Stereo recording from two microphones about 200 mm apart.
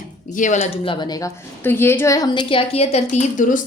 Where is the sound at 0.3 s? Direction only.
40° left (ahead or behind).